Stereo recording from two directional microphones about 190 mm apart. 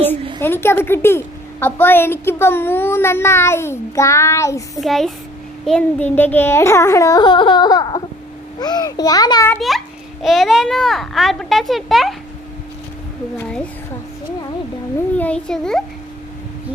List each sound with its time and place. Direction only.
0.4 s a woman's voice: 10° left (ahead or behind)
4.8 s a child's voice: centre (ahead or behind); by 9.6 s 20° left (ahead or behind)
9.6 s a child's voice: centre (ahead or behind)
13.4 s a child's voice: 5° left (ahead or behind)
15.2 s a child's voice: 5° left (ahead or behind)